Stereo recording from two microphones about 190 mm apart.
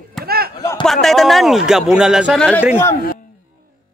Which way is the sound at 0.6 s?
20° left (ahead or behind).